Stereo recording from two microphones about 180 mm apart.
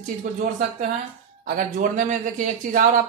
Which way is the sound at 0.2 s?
55° right (ahead or behind).